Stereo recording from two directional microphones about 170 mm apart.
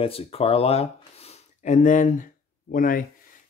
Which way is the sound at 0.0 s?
35° left (ahead or behind).